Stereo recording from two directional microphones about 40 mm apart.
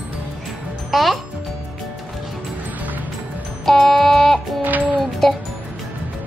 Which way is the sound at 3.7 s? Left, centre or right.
Centre.